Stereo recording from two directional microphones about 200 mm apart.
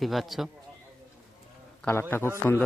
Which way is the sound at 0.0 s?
Centre (ahead or behind).